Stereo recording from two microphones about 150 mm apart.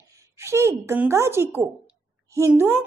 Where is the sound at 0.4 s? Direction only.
15° right (ahead or behind).